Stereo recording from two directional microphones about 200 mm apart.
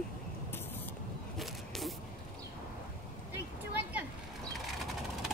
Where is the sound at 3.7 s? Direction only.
5° right (ahead or behind).